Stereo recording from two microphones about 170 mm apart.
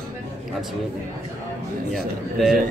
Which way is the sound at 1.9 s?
Centre (ahead or behind).